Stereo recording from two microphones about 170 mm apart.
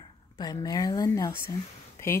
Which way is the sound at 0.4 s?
25° left (ahead or behind).